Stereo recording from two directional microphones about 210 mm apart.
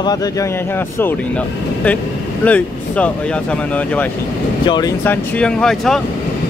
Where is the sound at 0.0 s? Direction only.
20° left (ahead or behind).